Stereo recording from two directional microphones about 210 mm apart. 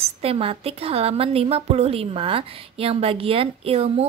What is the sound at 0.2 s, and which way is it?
A woman's voice, 25° right (ahead or behind).